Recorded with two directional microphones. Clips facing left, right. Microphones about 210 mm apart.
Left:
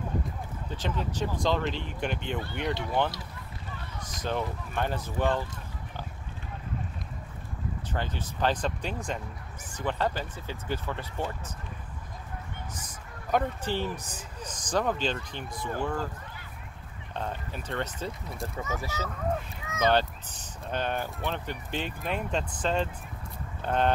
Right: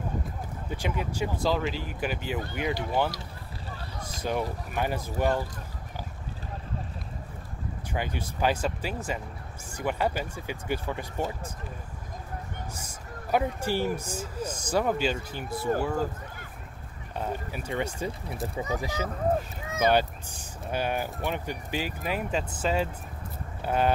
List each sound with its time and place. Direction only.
0.7 s speech: 10° right (ahead or behind)
3.7 s run: 35° right (ahead or behind)
4.2 s speech: 10° right (ahead or behind)
7.9 s speech: 10° right (ahead or behind)
12.7 s speech: 10° right (ahead or behind)
17.1 s speech: 10° right (ahead or behind)
19.0 s speech: 35° right (ahead or behind)
19.8 s speech: 10° right (ahead or behind)